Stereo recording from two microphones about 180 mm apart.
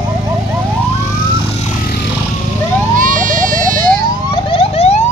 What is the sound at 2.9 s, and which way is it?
Vehicle, 45° right (ahead or behind).